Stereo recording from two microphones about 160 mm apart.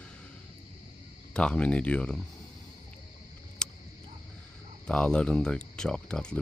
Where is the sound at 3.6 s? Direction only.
5° left (ahead or behind).